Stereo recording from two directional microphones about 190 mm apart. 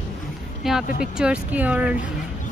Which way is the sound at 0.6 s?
Centre (ahead or behind).